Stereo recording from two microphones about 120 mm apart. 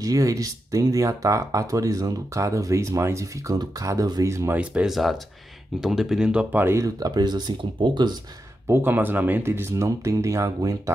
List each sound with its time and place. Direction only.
0.0 s speech: 30° right (ahead or behind)
4.6 s speech: 5° right (ahead or behind); by 8.1 s 40° right (ahead or behind)
8.6 s speech: 20° right (ahead or behind)